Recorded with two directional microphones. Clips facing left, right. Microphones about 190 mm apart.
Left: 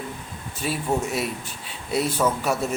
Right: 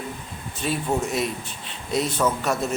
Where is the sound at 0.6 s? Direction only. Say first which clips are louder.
Even; 5° left (ahead or behind).